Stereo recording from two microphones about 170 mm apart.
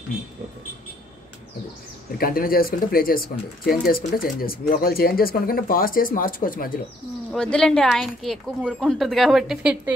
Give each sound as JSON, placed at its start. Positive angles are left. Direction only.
{"t": 2.1, "sound": "speech", "side_deg": 60}
{"t": 7.3, "sound": "speech", "side_deg": 5}